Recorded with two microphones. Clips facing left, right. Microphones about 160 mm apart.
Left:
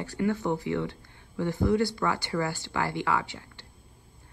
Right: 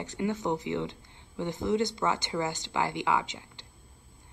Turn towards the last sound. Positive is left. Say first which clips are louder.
# even
turn(degrees=-20)  # may be behind; listen again after turning